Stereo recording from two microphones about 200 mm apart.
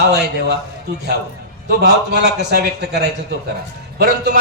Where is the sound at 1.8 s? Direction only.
55° right (ahead or behind).